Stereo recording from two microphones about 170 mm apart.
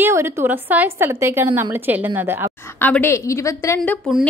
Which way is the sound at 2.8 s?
10° left (ahead or behind).